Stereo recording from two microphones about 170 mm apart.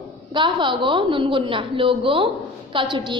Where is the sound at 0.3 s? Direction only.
30° right (ahead or behind).